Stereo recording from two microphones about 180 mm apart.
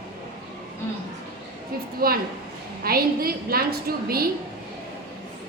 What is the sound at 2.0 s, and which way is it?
A woman's voice, 55° right (ahead or behind).